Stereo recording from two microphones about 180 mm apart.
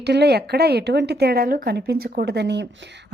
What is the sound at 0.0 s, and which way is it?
A woman's voice, 65° right (ahead or behind).